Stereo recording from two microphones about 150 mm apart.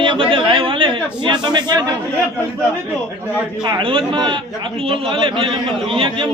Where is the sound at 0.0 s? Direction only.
35° right (ahead or behind).